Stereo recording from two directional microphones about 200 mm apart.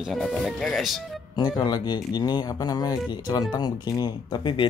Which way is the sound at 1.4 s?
20° left (ahead or behind).